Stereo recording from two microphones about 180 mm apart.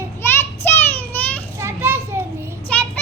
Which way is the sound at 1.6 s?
15° right (ahead or behind).